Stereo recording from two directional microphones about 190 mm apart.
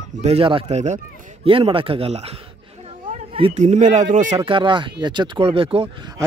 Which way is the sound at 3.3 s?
35° right (ahead or behind).